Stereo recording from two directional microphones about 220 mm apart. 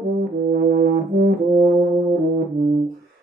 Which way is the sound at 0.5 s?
45° right (ahead or behind).